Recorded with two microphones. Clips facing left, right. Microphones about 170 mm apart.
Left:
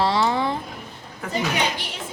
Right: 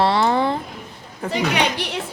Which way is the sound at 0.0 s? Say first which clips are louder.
Right 3 dB; 55° right (ahead or behind).